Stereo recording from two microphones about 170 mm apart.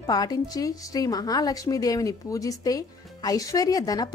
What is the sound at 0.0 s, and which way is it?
A woman's voice, 25° left (ahead or behind).